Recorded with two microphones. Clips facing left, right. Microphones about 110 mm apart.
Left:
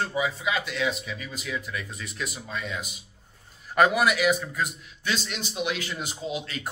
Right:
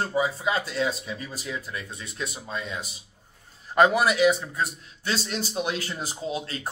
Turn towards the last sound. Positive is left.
turn(degrees=-35)  # may be behind; listen again after turning